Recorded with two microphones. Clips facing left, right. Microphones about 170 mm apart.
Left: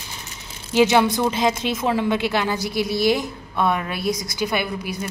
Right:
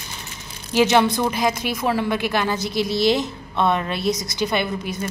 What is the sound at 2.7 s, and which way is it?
Speech, 20° right (ahead or behind).